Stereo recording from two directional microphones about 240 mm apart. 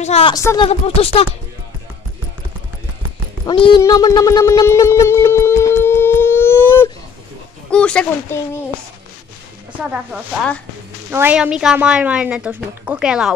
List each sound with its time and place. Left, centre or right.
0.0 s speech: left
3.4 s a woman's voice: centre
9.7 s a woman's voice: centre